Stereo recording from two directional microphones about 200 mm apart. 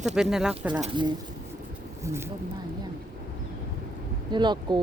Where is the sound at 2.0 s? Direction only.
15° right (ahead or behind).